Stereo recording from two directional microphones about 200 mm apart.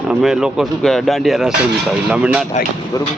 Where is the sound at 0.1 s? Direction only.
Centre (ahead or behind).